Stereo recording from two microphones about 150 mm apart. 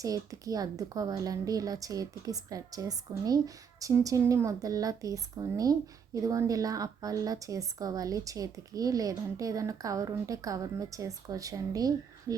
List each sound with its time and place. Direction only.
0.0 s a woman's voice: 25° right (ahead or behind)